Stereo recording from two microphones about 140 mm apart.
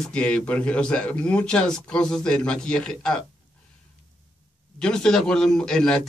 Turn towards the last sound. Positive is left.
turn(degrees=5)  # may be behind; listen again after turning